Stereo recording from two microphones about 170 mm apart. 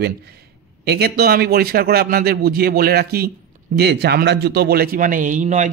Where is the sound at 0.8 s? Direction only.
70° right (ahead or behind).